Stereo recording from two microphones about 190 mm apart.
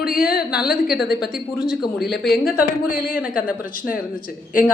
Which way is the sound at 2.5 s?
50° left (ahead or behind).